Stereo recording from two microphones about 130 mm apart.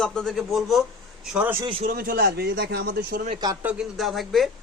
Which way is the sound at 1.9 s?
90° right.